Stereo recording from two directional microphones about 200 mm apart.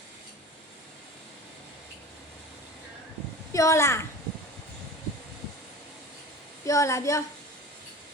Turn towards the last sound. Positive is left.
turn(degrees=15)  # may be behind; listen again after turning